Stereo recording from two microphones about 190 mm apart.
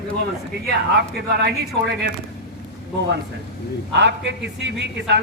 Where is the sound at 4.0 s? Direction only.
65° right (ahead or behind).